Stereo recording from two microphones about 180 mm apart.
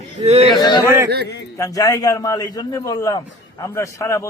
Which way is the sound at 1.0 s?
65° right (ahead or behind).